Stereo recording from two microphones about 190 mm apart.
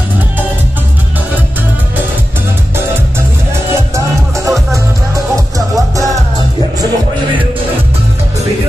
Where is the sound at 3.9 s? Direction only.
15° right (ahead or behind).